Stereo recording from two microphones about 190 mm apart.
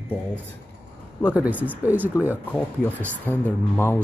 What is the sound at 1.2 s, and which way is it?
Speech, 5° right (ahead or behind).